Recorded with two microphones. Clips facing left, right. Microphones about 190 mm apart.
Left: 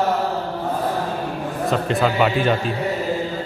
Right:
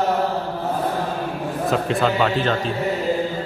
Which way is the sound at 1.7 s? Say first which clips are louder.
Even; centre (ahead or behind).